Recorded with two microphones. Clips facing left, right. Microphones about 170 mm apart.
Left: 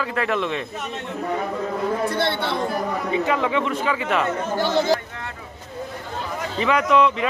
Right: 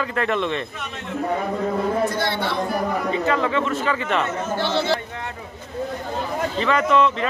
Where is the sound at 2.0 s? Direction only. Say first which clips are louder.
Even; 30° left (ahead or behind).